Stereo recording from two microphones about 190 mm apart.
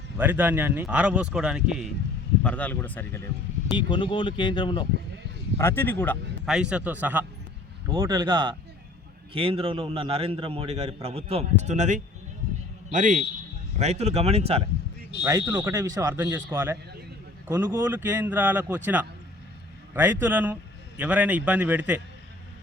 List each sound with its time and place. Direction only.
0.2 s speech: 10° right (ahead or behind)
2.4 s speech: 5° left (ahead or behind)
3.7 s speech: 25° left (ahead or behind)
5.5 s speech: 10° left (ahead or behind)
6.4 s a man's voice: 5° right (ahead or behind)
7.9 s a man's voice: 25° right (ahead or behind)
15.2 s a man's voice: 15° right (ahead or behind)